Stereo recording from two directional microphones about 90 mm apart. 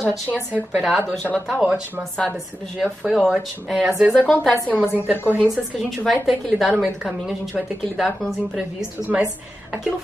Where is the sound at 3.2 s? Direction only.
10° right (ahead or behind).